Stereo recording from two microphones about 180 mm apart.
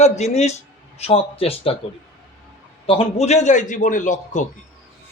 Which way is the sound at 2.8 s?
30° left (ahead or behind).